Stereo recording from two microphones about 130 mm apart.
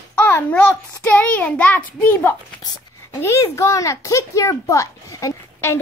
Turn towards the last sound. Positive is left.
turn(degrees=20)  # may be behind; listen again after turning